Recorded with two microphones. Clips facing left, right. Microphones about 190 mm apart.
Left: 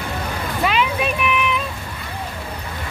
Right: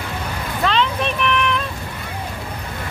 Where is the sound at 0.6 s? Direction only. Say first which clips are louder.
Even; 10° left (ahead or behind).